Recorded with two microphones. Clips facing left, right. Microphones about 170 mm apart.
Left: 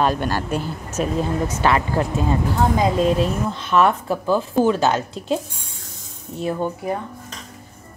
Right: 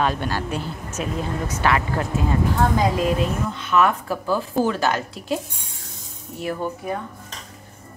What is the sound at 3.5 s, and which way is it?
A woman's voice, 30° left (ahead or behind).